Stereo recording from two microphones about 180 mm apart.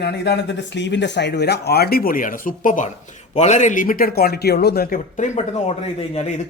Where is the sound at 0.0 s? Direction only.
70° left (ahead or behind).